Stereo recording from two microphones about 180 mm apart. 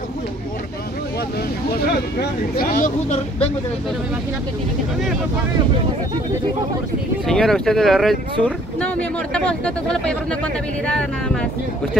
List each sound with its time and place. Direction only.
2.5 s speech: 55° left (ahead or behind)
7.2 s speech: centre (ahead or behind)